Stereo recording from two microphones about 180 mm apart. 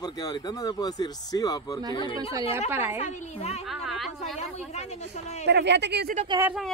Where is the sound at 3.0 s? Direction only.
40° left (ahead or behind).